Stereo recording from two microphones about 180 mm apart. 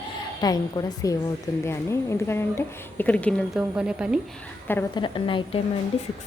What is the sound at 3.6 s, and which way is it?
Speech, 5° right (ahead or behind).